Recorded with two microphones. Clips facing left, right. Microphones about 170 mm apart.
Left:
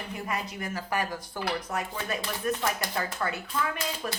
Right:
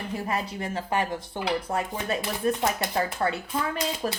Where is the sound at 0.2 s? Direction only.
30° right (ahead or behind).